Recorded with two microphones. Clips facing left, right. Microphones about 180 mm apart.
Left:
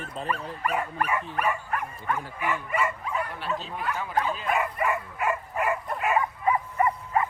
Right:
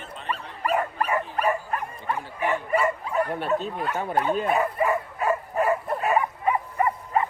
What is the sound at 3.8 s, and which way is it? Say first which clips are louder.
Speech: even; 35° right (ahead or behind).